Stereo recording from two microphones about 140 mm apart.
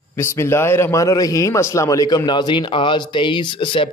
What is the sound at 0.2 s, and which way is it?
A man's voice, 20° left (ahead or behind).